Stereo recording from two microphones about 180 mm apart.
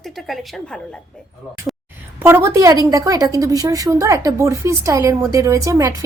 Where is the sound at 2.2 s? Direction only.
15° right (ahead or behind).